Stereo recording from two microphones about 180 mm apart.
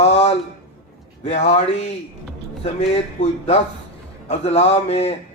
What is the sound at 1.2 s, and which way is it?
Speech, 35° left (ahead or behind).